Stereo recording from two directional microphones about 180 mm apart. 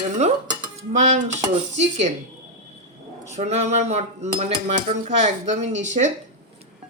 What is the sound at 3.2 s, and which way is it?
Cutlery, 40° right (ahead or behind).